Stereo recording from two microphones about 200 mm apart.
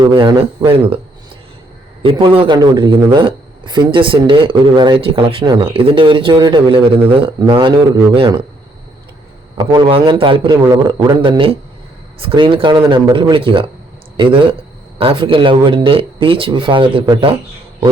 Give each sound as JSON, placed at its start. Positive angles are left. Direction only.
{"t": 0.0, "sound": "a man's voice", "side_deg": -20}
{"t": 2.0, "sound": "a man's voice", "side_deg": -25}
{"t": 9.6, "sound": "a man's voice", "side_deg": -20}